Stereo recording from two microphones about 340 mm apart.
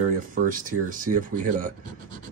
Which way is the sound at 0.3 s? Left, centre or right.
Right.